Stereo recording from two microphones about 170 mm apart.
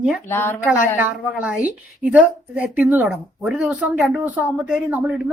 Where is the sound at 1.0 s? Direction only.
10° right (ahead or behind).